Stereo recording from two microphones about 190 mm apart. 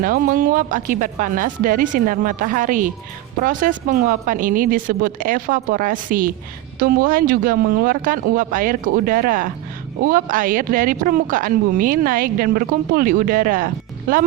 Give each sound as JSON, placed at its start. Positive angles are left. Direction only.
{"t": 0.0, "sound": "speech", "side_deg": -45}